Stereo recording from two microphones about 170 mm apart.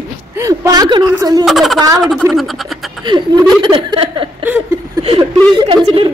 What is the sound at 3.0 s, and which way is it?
Speech, 25° right (ahead or behind).